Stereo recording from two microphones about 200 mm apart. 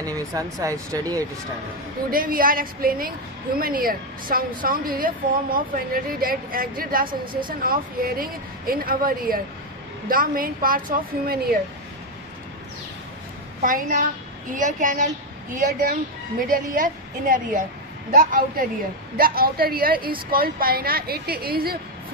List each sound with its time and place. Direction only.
0.0 s speech: 15° right (ahead or behind)
2.0 s a woman's voice: 45° right (ahead or behind)
13.6 s a woman's voice: 45° right (ahead or behind)